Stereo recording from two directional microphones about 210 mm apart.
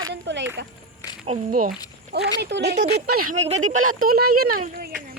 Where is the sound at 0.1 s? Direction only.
55° right (ahead or behind).